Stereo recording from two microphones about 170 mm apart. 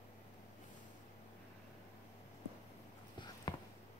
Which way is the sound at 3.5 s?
25° left (ahead or behind).